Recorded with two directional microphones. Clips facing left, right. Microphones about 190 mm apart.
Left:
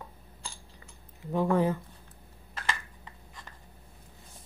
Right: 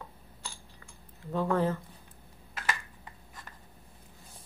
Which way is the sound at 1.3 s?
15° left (ahead or behind).